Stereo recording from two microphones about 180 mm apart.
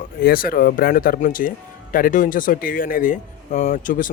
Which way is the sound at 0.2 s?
55° left (ahead or behind).